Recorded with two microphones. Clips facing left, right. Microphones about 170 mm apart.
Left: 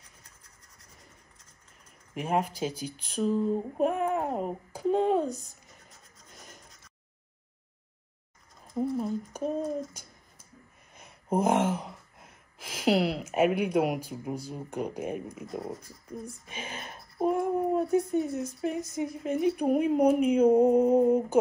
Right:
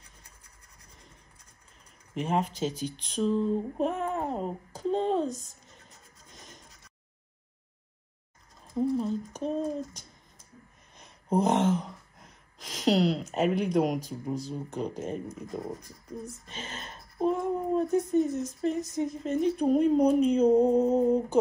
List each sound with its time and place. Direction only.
2.1 s speech: 5° left (ahead or behind)
6.1 s music: 5° left (ahead or behind)
8.7 s speech: 5° left (ahead or behind)
11.0 s gasp: 5° left (ahead or behind)
15.5 s speech: 5° left (ahead or behind)